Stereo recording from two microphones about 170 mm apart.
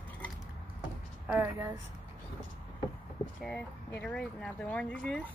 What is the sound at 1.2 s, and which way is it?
Speech, 10° right (ahead or behind).